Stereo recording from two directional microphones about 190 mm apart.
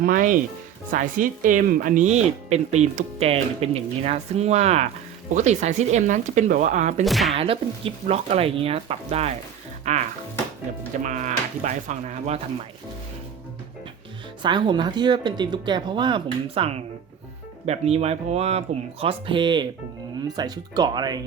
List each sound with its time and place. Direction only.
0.0 s speech: 45° right (ahead or behind)
7.0 s speech: centre (ahead or behind)
7.3 s speech: 30° right (ahead or behind)
14.4 s speech: 25° right (ahead or behind)